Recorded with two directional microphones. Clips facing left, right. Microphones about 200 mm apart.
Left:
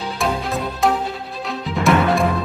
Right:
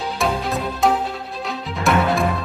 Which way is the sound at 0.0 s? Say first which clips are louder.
Even; centre (ahead or behind).